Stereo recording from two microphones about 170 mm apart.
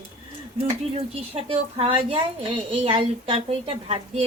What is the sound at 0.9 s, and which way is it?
A woman's voice, 35° right (ahead or behind).